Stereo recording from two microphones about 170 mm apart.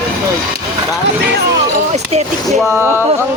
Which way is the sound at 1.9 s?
40° right (ahead or behind).